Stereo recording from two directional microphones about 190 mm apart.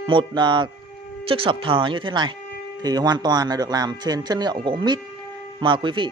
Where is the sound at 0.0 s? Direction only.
25° right (ahead or behind).